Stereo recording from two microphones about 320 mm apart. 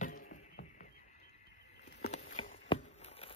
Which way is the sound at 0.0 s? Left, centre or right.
Left.